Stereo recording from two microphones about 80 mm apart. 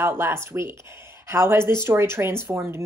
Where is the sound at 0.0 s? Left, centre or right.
Right.